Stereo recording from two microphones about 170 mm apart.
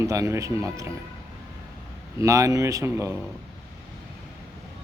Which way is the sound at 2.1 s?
20° right (ahead or behind).